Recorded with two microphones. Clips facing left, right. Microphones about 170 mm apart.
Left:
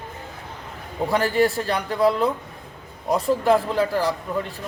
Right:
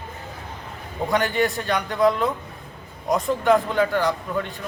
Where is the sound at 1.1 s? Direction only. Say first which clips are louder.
Left 2 dB; 35° left (ahead or behind).